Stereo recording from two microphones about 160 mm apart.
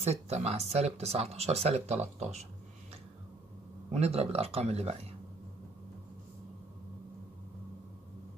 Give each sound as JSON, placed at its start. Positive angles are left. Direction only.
{"t": 0.0, "sound": "speech", "side_deg": -40}
{"t": 3.9, "sound": "speech", "side_deg": -40}